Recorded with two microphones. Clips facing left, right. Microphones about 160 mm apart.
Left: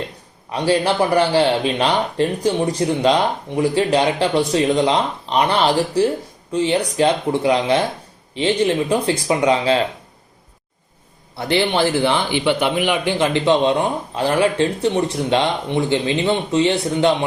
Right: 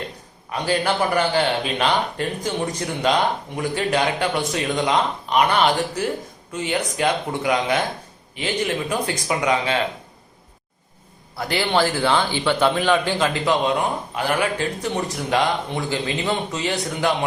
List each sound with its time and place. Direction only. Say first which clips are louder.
0.5 s a man's voice: left 4 dB; 30° left (ahead or behind)
11.3 s speech: left 3 dB; 25° left (ahead or behind)